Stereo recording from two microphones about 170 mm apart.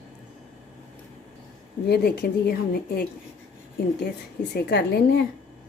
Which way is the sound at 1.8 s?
70° left (ahead or behind).